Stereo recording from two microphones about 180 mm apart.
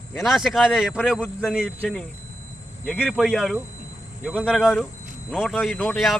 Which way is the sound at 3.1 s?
5° right (ahead or behind).